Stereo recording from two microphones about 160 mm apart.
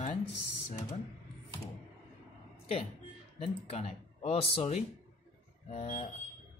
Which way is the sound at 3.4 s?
40° left (ahead or behind).